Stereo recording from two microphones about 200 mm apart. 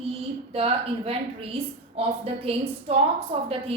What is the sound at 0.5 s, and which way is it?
A woman's voice, 30° right (ahead or behind).